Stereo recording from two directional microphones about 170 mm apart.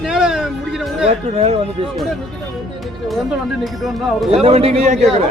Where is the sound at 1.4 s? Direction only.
35° right (ahead or behind).